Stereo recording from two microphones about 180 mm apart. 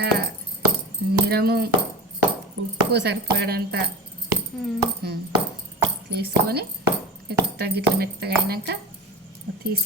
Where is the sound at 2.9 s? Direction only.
65° right (ahead or behind).